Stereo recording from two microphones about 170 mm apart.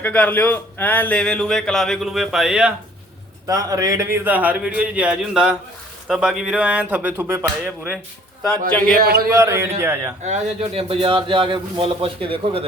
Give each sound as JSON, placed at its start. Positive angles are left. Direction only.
{"t": 0.0, "sound": "a man's voice", "side_deg": 10}
{"t": 3.4, "sound": "a man's voice", "side_deg": -20}
{"t": 9.0, "sound": "speech", "side_deg": -60}
{"t": 9.3, "sound": "a man's voice", "side_deg": -15}
{"t": 10.2, "sound": "a man's voice", "side_deg": -40}